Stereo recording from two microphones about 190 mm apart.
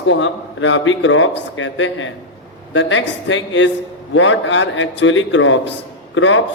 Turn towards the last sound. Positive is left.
turn(degrees=85)